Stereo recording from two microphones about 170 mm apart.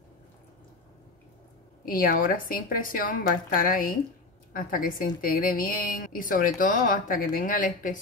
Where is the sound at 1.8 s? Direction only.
55° left (ahead or behind).